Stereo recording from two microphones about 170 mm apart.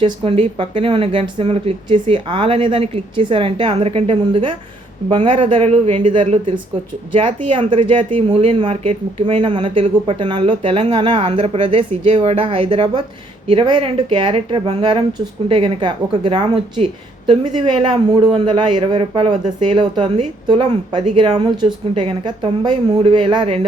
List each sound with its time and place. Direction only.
0.0 s speech: 30° right (ahead or behind)
6.1 s a woman's voice: 30° right (ahead or behind)